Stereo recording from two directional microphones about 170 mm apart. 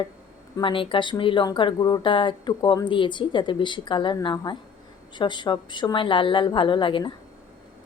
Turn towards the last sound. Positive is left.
turn(degrees=30)  # may be behind; listen again after turning